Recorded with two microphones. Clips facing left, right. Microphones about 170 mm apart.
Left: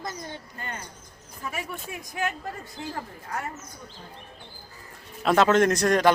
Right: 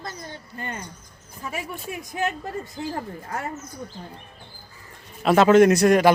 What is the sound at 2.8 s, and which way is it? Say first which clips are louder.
Speech: right 5 dB; 35° right (ahead or behind).